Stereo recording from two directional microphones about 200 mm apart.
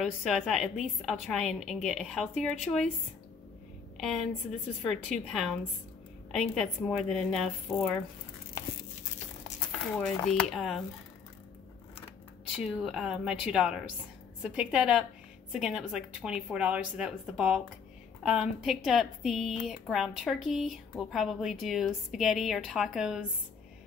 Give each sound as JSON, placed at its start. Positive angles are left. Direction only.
{"t": 0.0, "sound": "speech", "side_deg": 0}
{"t": 4.8, "sound": "speech", "side_deg": 0}
{"t": 9.7, "sound": "speech", "side_deg": 5}
{"t": 12.5, "sound": "speech", "side_deg": -5}